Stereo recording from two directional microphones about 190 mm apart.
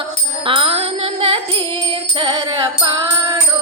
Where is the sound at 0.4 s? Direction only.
30° right (ahead or behind).